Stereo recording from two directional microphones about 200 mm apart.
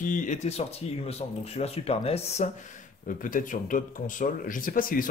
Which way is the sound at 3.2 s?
45° left (ahead or behind).